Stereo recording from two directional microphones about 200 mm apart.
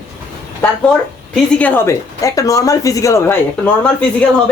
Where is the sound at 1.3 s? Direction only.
5° left (ahead or behind).